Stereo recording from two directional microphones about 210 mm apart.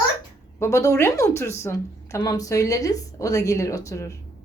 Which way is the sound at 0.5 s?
15° left (ahead or behind).